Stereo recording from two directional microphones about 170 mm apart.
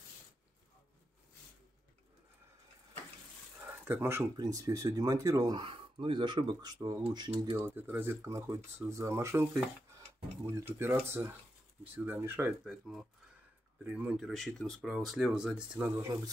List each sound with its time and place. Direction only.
3.8 s speech: 10° right (ahead or behind); by 7.6 s 35° right (ahead or behind)
7.6 s speech: 10° right (ahead or behind)
12.6 s speech: 5° right (ahead or behind)